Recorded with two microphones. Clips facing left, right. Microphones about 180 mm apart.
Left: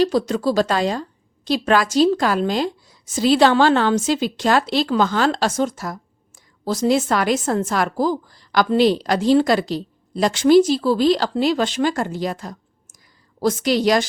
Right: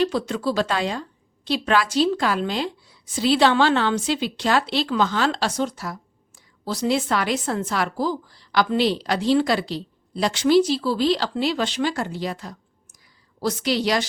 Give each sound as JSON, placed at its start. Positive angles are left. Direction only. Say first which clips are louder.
{"t": 0.0, "sound": "a woman's voice", "louder": "left 4 dB", "side_deg": 40}